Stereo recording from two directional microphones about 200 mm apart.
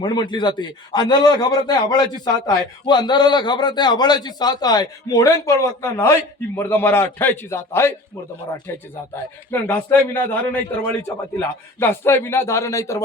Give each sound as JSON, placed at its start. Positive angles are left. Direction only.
{"t": 0.0, "sound": "a man's voice", "side_deg": 20}
{"t": 9.5, "sound": "speech", "side_deg": 10}